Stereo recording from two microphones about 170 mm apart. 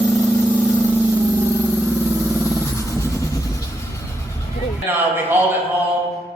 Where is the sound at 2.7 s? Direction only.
15° left (ahead or behind).